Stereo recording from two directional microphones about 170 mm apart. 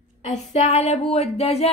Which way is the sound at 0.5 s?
40° left (ahead or behind).